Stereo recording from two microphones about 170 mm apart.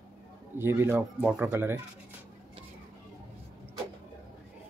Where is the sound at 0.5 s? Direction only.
15° right (ahead or behind).